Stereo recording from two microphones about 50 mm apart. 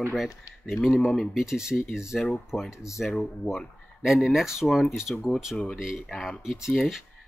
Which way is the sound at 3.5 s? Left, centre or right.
Left.